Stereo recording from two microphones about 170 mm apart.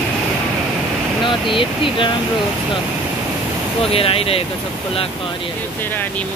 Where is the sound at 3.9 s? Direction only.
35° left (ahead or behind).